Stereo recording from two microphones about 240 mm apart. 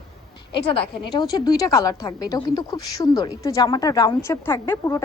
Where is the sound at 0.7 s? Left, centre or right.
Left.